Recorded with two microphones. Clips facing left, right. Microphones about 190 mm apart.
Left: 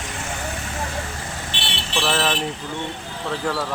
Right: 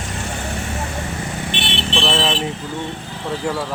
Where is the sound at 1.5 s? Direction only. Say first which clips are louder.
Right 7 dB; 20° right (ahead or behind).